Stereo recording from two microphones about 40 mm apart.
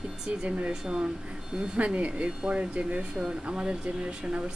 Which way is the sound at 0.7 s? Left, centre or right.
Centre.